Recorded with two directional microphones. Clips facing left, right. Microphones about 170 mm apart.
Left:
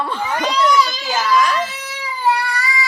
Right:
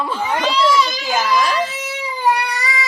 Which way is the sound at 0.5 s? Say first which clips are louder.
Left 2 dB; 30° right (ahead or behind).